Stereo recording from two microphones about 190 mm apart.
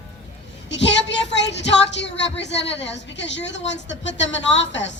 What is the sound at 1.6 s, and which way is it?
A woman's voice, 70° left (ahead or behind).